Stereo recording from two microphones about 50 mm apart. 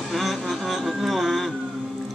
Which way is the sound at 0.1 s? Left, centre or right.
Centre.